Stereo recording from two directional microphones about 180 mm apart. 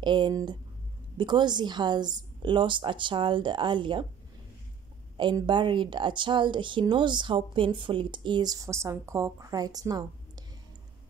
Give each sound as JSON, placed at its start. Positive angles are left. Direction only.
{"t": 0.0, "sound": "a woman's voice", "side_deg": -25}
{"t": 5.1, "sound": "a woman's voice", "side_deg": -25}